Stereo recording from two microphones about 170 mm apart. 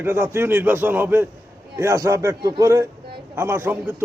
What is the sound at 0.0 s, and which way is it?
A man's voice, 15° right (ahead or behind).